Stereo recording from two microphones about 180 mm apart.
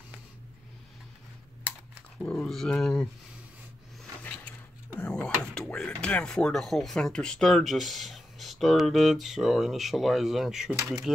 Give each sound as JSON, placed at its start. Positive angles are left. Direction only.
{"t": 2.1, "sound": "speech", "side_deg": 5}
{"t": 4.0, "sound": "a sound", "side_deg": 10}
{"t": 4.9, "sound": "speech", "side_deg": 5}
{"t": 10.8, "sound": "speech", "side_deg": -20}